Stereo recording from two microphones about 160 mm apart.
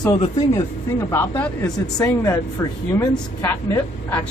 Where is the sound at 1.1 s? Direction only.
15° left (ahead or behind).